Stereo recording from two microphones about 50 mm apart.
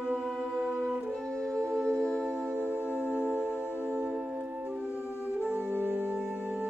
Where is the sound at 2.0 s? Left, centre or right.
Centre.